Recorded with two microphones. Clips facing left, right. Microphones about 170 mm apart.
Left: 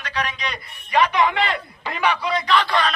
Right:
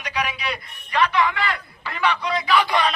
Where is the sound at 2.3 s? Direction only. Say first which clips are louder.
Even; 5° right (ahead or behind).